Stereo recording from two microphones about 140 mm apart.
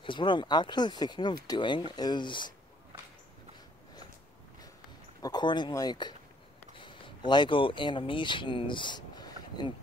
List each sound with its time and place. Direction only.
0.0 s speech: 35° left (ahead or behind)
5.2 s speech: 30° left (ahead or behind)